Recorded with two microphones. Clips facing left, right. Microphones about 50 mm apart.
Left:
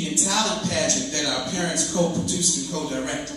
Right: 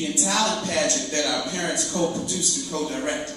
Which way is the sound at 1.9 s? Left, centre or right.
Centre.